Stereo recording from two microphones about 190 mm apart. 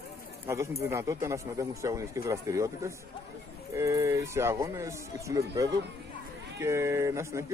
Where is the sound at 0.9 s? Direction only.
15° right (ahead or behind).